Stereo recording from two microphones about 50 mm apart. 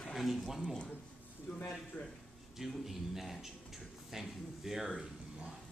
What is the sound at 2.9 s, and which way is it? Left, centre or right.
Speech, centre.